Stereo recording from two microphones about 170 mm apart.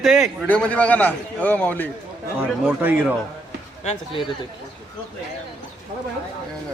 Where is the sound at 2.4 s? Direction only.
10° right (ahead or behind).